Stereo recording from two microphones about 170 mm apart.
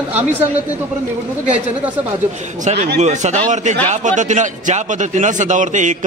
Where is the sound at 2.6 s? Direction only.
45° right (ahead or behind).